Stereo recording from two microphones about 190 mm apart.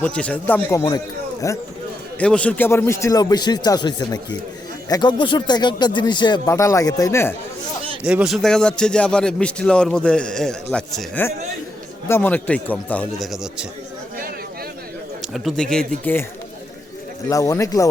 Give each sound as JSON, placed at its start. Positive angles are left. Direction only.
{"t": 0.0, "sound": "a man's voice", "side_deg": 5}
{"t": 2.1, "sound": "speech", "side_deg": 5}
{"t": 8.0, "sound": "a man's voice", "side_deg": -5}
{"t": 15.2, "sound": "speech", "side_deg": 0}
{"t": 17.2, "sound": "a man's voice", "side_deg": 15}